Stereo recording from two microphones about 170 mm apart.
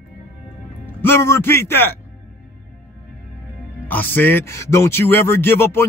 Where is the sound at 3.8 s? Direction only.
10° left (ahead or behind).